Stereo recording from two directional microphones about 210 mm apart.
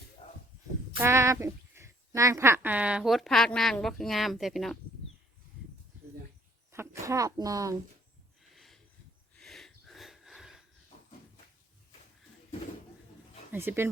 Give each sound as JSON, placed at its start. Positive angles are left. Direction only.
{"t": 0.9, "sound": "speech", "side_deg": -15}
{"t": 6.7, "sound": "a woman's voice", "side_deg": -15}
{"t": 8.5, "sound": "a sound", "side_deg": 0}
{"t": 13.5, "sound": "speech", "side_deg": -10}